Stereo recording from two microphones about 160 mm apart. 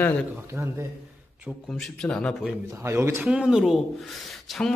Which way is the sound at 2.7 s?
15° right (ahead or behind).